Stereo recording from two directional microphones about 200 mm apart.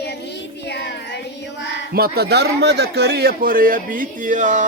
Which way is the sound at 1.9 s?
50° right (ahead or behind).